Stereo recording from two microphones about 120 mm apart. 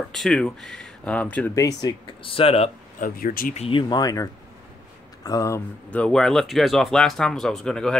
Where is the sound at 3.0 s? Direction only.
90° left.